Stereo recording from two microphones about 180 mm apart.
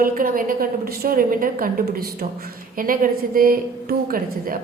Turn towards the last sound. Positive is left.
turn(degrees=-50)  # may be behind; listen again after turning